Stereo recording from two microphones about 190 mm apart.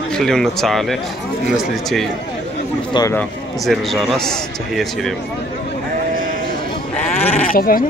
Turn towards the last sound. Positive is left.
turn(degrees=50)  # may be behind; listen again after turning